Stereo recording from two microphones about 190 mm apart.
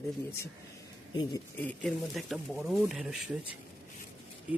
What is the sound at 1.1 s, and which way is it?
Speech, 20° left (ahead or behind).